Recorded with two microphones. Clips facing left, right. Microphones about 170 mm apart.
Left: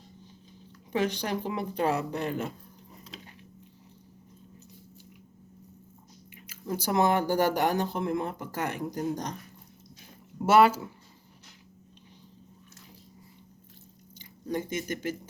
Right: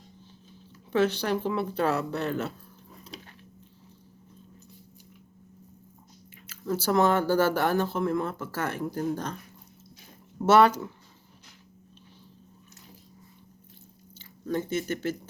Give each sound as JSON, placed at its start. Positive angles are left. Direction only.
{"t": 0.9, "sound": "speech", "side_deg": 15}
{"t": 6.5, "sound": "speech", "side_deg": 15}
{"t": 10.4, "sound": "speech", "side_deg": 10}
{"t": 14.4, "sound": "speech", "side_deg": 15}